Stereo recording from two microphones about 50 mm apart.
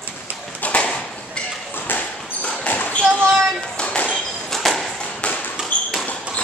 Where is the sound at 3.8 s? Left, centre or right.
Left.